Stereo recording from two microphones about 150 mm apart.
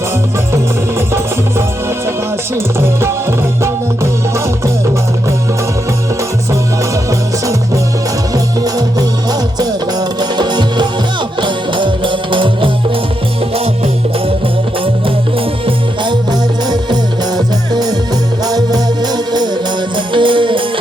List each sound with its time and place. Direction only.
0.5 s music: 15° right (ahead or behind)
3.6 s music: 20° right (ahead or behind)
8.6 s music: 25° right (ahead or behind)
15.6 s music: 30° right (ahead or behind)